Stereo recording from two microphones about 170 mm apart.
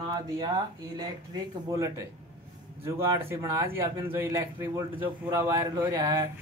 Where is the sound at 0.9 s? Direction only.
25° right (ahead or behind).